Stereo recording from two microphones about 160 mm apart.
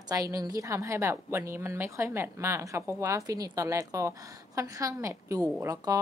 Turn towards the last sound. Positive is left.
turn(degrees=-20)  # may be behind; listen again after turning